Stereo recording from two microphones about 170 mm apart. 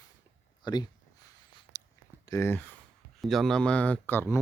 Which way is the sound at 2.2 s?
15° left (ahead or behind).